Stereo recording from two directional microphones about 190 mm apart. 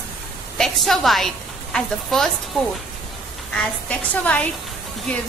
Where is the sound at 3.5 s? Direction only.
5° left (ahead or behind).